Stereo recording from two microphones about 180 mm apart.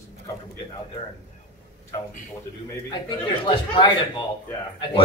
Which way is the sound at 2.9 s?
25° left (ahead or behind).